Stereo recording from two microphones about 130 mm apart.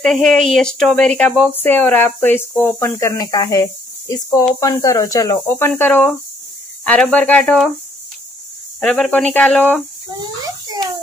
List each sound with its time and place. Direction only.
0.0 s speech: 5° left (ahead or behind)
1.5 s speech: 15° left (ahead or behind)
5.7 s speech: 15° left (ahead or behind)
8.8 s speech: 5° left (ahead or behind)
10.0 s a child's voice: 30° right (ahead or behind)